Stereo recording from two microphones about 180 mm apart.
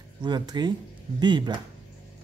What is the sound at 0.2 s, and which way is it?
Speech, 25° right (ahead or behind).